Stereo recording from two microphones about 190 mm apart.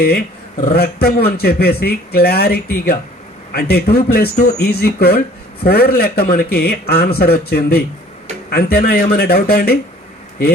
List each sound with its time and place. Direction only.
0.0 s a man's voice: 55° left (ahead or behind)